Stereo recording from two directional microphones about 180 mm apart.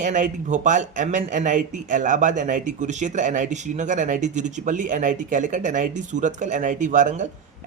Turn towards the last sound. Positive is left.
turn(degrees=-40)  # may be behind; listen again after turning